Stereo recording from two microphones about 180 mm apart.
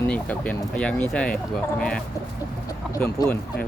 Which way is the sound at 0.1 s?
5° left (ahead or behind).